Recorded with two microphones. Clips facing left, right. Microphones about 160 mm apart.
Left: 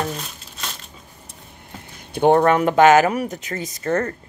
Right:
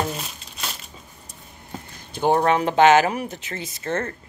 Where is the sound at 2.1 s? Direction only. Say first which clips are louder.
Left 4 dB; 60° left (ahead or behind); by 4.1 s 40° left (ahead or behind).